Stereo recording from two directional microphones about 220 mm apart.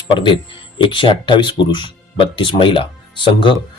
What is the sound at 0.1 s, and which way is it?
Speech, 20° left (ahead or behind).